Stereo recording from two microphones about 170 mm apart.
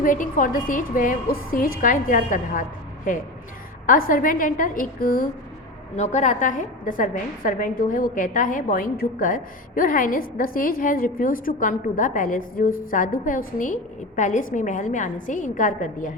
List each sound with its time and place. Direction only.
0.0 s a woman's voice: 50° left (ahead or behind)
6.0 s a woman's voice: 45° left (ahead or behind)